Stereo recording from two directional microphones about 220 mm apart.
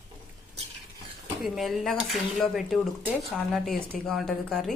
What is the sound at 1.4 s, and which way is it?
Speech, centre (ahead or behind).